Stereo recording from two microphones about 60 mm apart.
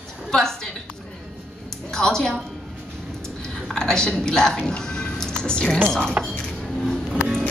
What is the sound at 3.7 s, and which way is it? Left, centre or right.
Speech, centre.